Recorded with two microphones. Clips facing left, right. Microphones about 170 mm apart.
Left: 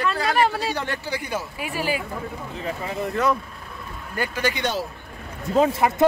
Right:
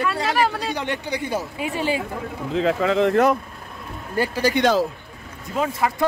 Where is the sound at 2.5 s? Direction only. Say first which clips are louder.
Right 11 dB; 90° right.